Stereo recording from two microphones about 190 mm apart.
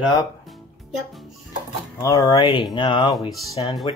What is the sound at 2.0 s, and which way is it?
Speech, 20° left (ahead or behind).